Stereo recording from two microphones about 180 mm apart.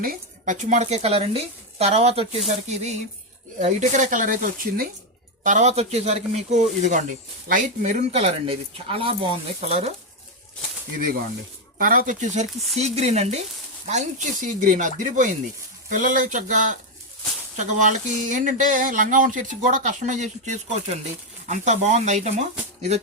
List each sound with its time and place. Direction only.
0.0 s speech: 50° right (ahead or behind)
11.8 s speech: 50° right (ahead or behind)